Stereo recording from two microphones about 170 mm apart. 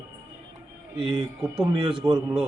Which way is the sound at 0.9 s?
30° right (ahead or behind).